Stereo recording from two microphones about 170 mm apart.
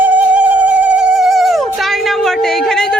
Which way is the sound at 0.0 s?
10° right (ahead or behind).